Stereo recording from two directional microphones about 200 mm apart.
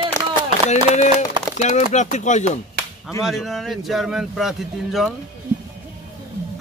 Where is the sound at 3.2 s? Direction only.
Centre (ahead or behind).